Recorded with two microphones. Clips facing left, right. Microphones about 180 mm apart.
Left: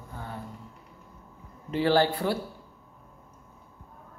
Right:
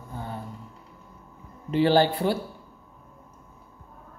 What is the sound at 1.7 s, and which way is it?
Speech, 25° right (ahead or behind).